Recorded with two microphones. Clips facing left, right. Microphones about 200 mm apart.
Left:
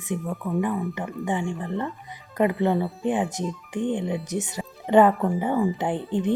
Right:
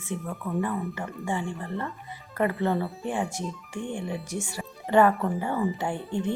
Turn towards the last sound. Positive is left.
turn(degrees=20)  # may be behind; listen again after turning